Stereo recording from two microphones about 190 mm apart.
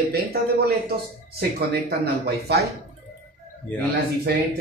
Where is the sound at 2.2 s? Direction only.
60° right (ahead or behind).